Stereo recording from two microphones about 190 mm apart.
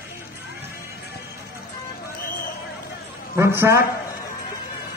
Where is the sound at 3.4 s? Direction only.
15° right (ahead or behind).